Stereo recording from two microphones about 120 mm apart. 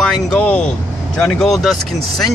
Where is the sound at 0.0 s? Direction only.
5° left (ahead or behind).